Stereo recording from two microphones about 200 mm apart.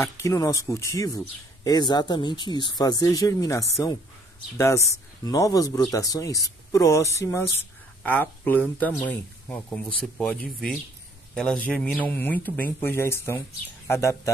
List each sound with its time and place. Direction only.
0.0 s speech: 15° left (ahead or behind)